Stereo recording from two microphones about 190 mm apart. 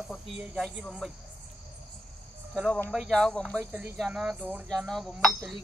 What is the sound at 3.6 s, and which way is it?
Speech, 10° right (ahead or behind).